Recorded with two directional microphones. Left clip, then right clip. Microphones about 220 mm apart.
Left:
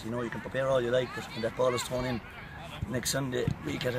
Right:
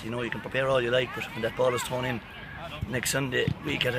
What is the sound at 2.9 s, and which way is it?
Speech, 5° right (ahead or behind).